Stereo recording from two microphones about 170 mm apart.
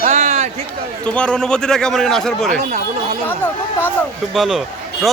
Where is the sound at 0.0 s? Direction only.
45° right (ahead or behind).